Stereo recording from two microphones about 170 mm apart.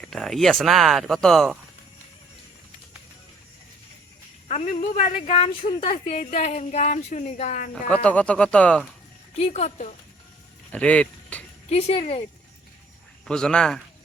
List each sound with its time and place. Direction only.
0.0 s speech: centre (ahead or behind)
4.4 s a sound: 45° left (ahead or behind)
4.8 s a woman's voice: 35° left (ahead or behind)
7.9 s speech: 5° left (ahead or behind)
9.4 s speech: 40° left (ahead or behind)
10.7 s a sound: 5° left (ahead or behind)
11.7 s a woman's voice: 35° left (ahead or behind)
13.2 s speech: 5° left (ahead or behind)